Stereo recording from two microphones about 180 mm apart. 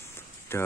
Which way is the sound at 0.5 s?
15° left (ahead or behind).